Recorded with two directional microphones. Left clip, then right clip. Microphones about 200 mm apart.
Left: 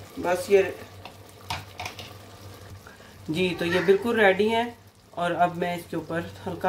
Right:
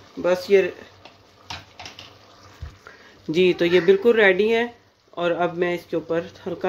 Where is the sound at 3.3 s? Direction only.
35° right (ahead or behind).